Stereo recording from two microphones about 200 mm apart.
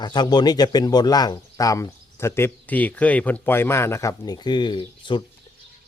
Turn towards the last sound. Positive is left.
turn(degrees=25)  # may be behind; listen again after turning